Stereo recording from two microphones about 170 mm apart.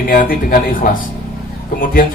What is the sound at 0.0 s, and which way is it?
A man's voice, 55° left (ahead or behind).